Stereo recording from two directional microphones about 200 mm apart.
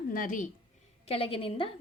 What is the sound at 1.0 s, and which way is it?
Speech, 30° left (ahead or behind).